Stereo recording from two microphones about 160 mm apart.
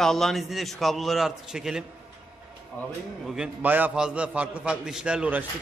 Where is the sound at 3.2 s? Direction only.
5° right (ahead or behind).